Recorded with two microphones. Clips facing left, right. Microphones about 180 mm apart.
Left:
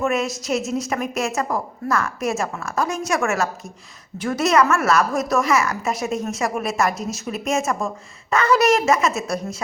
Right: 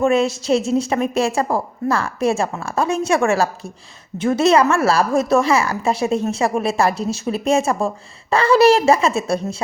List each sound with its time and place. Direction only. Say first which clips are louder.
0.0 s a woman's voice: right 6 dB; 30° right (ahead or behind)